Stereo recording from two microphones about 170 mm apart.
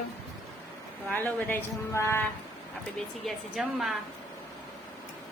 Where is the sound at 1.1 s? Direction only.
10° left (ahead or behind).